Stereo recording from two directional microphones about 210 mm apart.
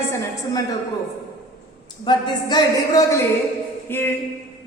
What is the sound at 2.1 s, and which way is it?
A woman's voice, 20° left (ahead or behind).